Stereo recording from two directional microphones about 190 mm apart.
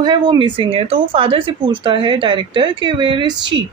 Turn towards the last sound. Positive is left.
turn(degrees=-25)  # may be behind; listen again after turning